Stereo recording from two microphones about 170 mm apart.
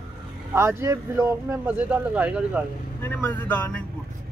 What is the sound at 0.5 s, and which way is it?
Speech, 15° right (ahead or behind).